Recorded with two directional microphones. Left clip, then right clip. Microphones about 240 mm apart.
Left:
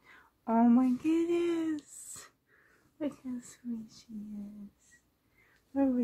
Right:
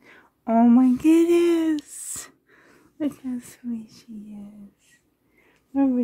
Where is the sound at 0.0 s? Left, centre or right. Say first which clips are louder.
Right 8 dB; right.